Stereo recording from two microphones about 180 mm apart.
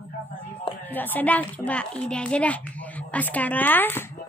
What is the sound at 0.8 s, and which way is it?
A child's voice, 10° left (ahead or behind).